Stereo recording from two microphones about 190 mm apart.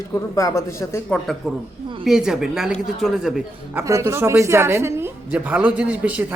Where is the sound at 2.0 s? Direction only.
5° right (ahead or behind).